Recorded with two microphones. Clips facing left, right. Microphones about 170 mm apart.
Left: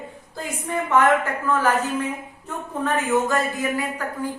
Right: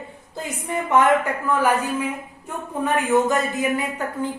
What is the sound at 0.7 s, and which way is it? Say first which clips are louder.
A woman's voice: right 1 dB; 20° right (ahead or behind).